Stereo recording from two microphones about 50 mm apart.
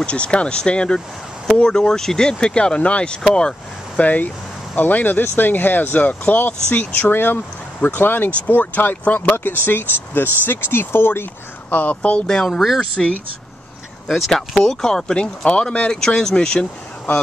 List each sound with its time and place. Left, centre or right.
0.0 s speech: left
4.0 s speech: left
11.7 s speech: left
12.3 s speech: centre
12.5 s speech: centre
14.0 s speech: centre
14.6 s speech: centre